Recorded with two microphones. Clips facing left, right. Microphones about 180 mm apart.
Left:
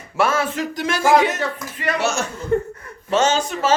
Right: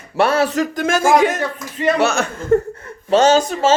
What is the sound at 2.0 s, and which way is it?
Speech, 60° right (ahead or behind).